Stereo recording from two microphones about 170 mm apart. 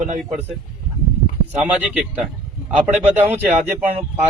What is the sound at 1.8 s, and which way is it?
Speech, 10° right (ahead or behind).